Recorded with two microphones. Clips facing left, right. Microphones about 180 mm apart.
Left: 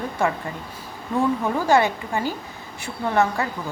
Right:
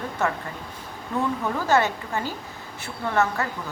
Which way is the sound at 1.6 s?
15° left (ahead or behind).